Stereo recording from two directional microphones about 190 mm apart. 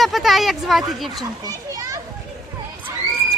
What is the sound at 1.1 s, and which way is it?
Speech, 20° right (ahead or behind).